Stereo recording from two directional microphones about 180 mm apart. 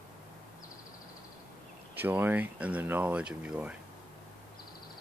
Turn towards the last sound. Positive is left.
turn(degrees=-5)  # may be behind; listen again after turning